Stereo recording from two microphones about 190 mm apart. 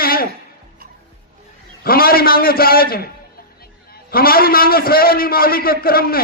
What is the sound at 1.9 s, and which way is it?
Speech, 50° left (ahead or behind).